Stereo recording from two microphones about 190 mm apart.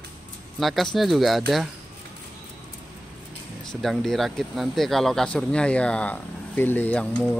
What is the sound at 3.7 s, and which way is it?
Speech, centre (ahead or behind).